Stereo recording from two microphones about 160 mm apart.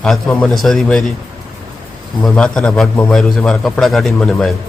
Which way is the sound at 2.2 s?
5° left (ahead or behind).